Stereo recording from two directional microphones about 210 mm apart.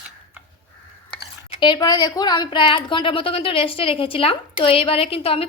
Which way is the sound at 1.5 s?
20° left (ahead or behind).